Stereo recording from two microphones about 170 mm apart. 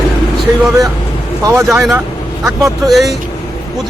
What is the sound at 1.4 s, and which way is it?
Speech, 20° right (ahead or behind).